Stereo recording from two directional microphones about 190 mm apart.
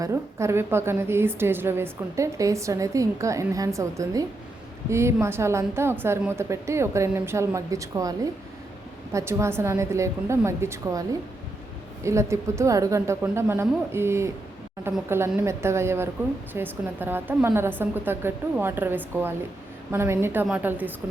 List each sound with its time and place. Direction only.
0.0 s a woman's voice: 15° right (ahead or behind)
12.0 s a woman's voice: 15° right (ahead or behind)